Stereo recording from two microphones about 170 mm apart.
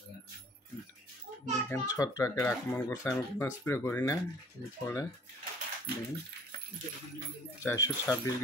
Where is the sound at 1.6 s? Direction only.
20° left (ahead or behind).